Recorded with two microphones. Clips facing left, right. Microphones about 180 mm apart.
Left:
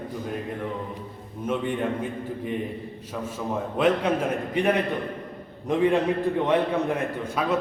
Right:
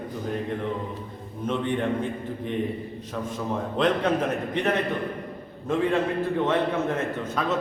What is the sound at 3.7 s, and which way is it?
Speech, 10° left (ahead or behind).